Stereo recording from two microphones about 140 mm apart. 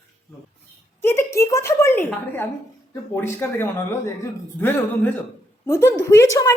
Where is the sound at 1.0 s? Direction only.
20° left (ahead or behind).